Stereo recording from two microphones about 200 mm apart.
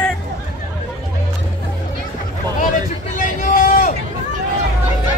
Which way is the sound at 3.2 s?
45° left (ahead or behind).